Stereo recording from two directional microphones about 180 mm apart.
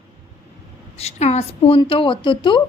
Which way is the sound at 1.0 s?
35° left (ahead or behind).